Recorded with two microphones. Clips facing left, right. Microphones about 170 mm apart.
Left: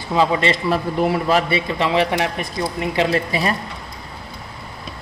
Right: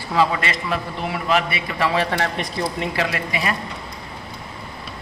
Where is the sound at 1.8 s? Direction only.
20° left (ahead or behind).